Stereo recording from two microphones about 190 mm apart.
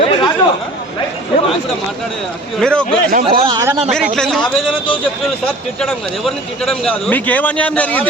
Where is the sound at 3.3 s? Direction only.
25° right (ahead or behind).